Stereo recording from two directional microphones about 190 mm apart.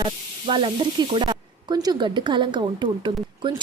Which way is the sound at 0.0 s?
25° right (ahead or behind).